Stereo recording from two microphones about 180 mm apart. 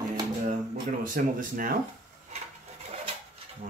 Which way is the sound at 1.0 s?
50° right (ahead or behind).